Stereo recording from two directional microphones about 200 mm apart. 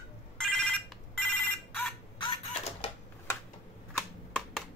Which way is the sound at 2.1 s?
25° left (ahead or behind).